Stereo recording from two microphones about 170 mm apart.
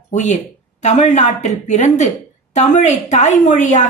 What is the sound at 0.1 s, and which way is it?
A woman's voice, 45° left (ahead or behind).